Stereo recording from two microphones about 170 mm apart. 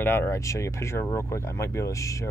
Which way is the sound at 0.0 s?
15° left (ahead or behind).